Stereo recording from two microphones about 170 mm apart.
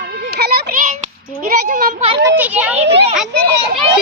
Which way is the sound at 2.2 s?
10° right (ahead or behind).